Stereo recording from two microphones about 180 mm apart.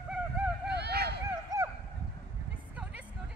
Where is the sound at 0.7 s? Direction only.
65° right (ahead or behind).